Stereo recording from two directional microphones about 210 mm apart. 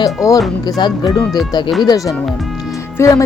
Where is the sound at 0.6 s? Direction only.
20° left (ahead or behind).